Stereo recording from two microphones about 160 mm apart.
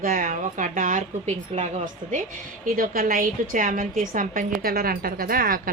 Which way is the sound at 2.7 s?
65° right (ahead or behind).